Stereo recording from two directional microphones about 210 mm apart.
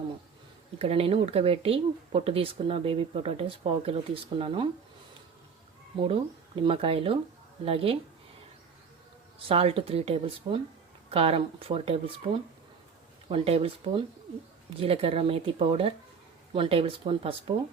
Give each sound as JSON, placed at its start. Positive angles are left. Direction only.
{"t": 0.8, "sound": "speech", "side_deg": -25}
{"t": 6.0, "sound": "speech", "side_deg": -25}
{"t": 9.5, "sound": "speech", "side_deg": -30}